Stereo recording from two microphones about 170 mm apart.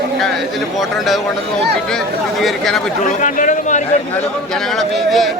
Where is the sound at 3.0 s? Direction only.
50° left (ahead or behind).